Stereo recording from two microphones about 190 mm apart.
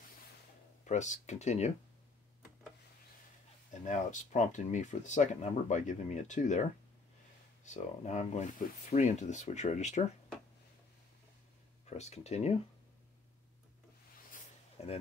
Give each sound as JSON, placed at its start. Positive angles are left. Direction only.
{"t": 0.8, "sound": "speech", "side_deg": 40}
{"t": 3.8, "sound": "speech", "side_deg": 40}
{"t": 7.6, "sound": "speech", "side_deg": 40}
{"t": 11.8, "sound": "speech", "side_deg": 35}
{"t": 14.3, "sound": "a sound", "side_deg": 35}